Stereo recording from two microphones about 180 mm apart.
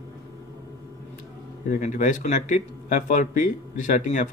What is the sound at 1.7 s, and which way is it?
Speech, 45° left (ahead or behind).